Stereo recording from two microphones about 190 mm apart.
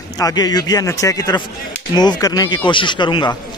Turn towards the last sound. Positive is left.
turn(degrees=25)  # may be behind; listen again after turning